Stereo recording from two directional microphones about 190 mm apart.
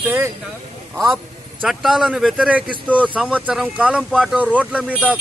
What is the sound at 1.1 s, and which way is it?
A man's voice, centre (ahead or behind).